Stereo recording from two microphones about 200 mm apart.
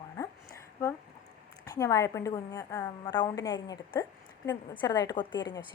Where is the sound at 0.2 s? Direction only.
20° left (ahead or behind).